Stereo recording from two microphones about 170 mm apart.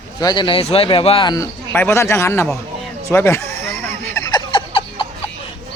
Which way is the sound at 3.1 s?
15° left (ahead or behind).